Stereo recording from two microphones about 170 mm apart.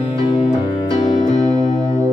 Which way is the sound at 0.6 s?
35° left (ahead or behind).